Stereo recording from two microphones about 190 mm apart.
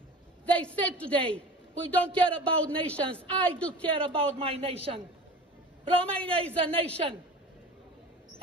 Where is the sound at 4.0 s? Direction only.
30° right (ahead or behind).